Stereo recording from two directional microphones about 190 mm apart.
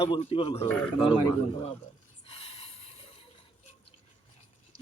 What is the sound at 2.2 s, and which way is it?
Snort, 30° left (ahead or behind).